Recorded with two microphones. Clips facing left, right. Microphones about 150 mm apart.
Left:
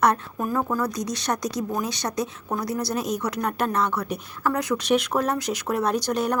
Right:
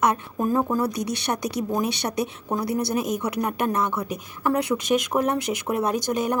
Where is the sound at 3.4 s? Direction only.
10° right (ahead or behind).